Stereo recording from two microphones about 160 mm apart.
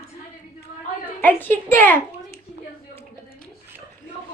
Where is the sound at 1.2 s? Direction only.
10° left (ahead or behind).